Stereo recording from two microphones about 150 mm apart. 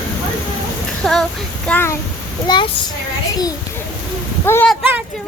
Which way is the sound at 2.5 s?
30° left (ahead or behind).